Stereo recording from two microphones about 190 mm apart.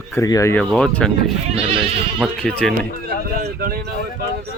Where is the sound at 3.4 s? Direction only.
50° right (ahead or behind).